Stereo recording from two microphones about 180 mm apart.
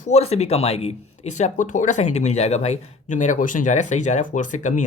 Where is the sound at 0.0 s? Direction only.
35° left (ahead or behind).